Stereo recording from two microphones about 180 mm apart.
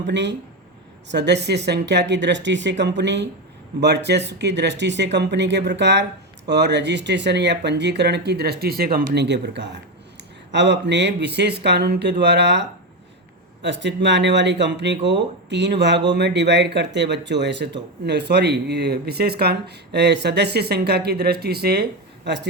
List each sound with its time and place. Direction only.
0.1 s speech: 80° right; by 9.2 s 55° right (ahead or behind)
9.2 s speech: 75° right (ahead or behind)